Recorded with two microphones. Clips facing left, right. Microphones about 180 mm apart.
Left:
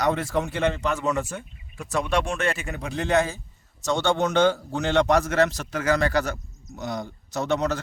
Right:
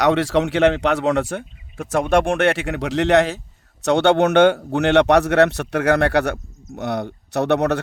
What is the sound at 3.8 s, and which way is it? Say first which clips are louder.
A man's voice: right 8 dB; 65° right (ahead or behind).